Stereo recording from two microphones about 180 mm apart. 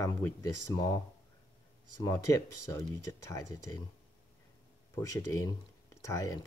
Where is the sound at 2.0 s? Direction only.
15° left (ahead or behind).